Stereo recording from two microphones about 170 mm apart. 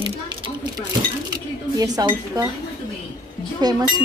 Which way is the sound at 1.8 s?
20° right (ahead or behind).